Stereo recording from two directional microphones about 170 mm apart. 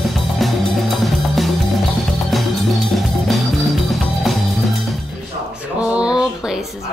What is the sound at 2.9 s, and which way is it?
Music, centre (ahead or behind).